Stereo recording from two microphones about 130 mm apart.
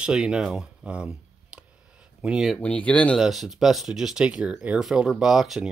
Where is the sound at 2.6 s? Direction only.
10° left (ahead or behind).